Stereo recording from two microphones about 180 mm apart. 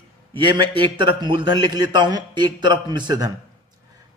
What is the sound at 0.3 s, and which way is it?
A man's voice, 25° right (ahead or behind).